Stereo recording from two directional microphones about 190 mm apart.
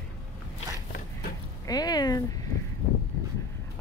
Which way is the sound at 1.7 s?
20° left (ahead or behind).